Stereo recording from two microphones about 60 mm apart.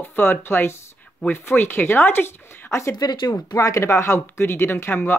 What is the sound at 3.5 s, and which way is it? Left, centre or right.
Speech, left.